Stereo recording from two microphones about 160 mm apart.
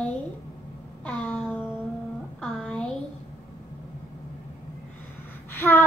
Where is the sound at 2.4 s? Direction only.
5° left (ahead or behind).